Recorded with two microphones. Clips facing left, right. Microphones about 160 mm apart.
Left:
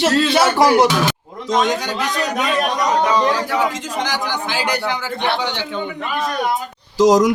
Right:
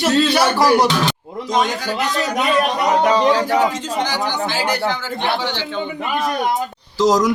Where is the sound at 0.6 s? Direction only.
20° left (ahead or behind).